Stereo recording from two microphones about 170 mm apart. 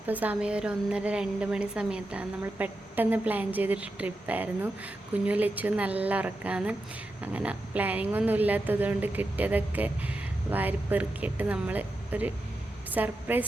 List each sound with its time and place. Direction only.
0.1 s a woman's voice: 10° right (ahead or behind)